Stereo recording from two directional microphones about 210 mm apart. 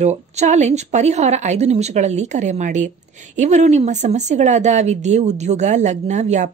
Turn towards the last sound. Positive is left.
turn(degrees=-35)  # may be behind; listen again after turning